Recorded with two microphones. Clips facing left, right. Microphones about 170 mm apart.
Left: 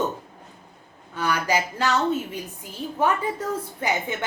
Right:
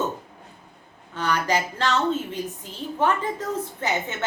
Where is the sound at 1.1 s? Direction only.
10° left (ahead or behind).